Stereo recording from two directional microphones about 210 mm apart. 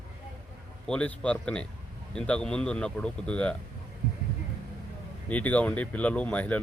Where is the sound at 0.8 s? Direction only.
5° left (ahead or behind).